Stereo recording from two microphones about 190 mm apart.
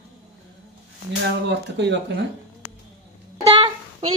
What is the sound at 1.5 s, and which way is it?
Speech, 65° right (ahead or behind).